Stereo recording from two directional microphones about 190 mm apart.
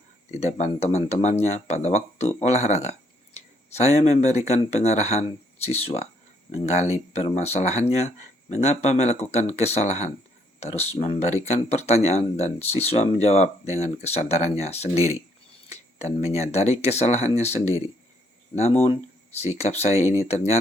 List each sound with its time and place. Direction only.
0.3 s speech: 35° left (ahead or behind)